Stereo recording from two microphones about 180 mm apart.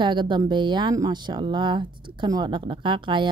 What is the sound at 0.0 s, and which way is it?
Speech, 25° right (ahead or behind).